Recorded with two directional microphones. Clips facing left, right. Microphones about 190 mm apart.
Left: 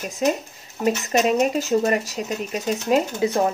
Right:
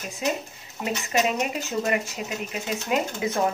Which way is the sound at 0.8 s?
40° left (ahead or behind).